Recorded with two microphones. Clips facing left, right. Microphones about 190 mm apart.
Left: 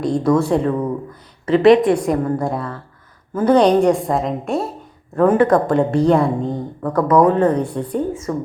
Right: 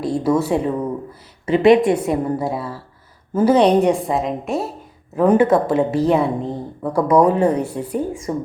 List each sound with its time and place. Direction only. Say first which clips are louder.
0.0 s a woman's voice: left 2 dB; 5° right (ahead or behind)
1.5 s a woman's voice: left 1 dB; 25° right (ahead or behind)
1.9 s a woman's voice: left 1 dB; 5° right (ahead or behind)